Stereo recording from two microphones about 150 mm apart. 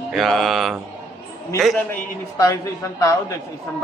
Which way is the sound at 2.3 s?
20° left (ahead or behind).